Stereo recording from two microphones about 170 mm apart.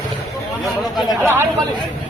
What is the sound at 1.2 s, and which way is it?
Speech, 15° right (ahead or behind).